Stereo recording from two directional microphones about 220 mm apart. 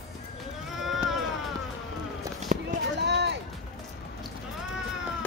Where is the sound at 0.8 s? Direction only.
Centre (ahead or behind).